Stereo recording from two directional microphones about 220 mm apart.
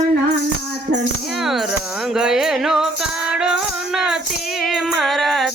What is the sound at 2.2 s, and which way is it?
Music, centre (ahead or behind).